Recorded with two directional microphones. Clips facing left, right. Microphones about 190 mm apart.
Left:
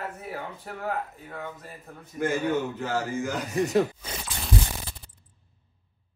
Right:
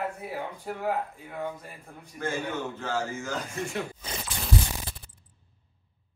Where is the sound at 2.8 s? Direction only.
15° left (ahead or behind).